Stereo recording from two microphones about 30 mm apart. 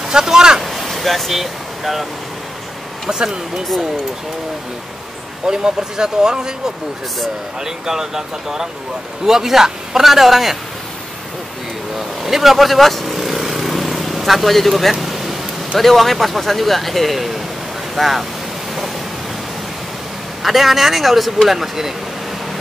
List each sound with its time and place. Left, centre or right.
0.1 s speech: right
0.6 s a sound: centre
0.8 s speech: centre
3.1 s speech: right
5.5 s a man's voice: right
12.2 s vehicle: centre
15.8 s speech: centre
20.4 s a man's voice: centre